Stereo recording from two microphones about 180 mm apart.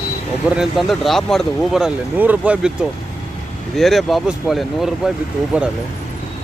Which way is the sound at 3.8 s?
Centre (ahead or behind).